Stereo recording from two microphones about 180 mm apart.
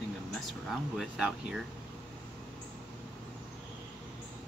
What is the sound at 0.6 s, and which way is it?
Speech, centre (ahead or behind).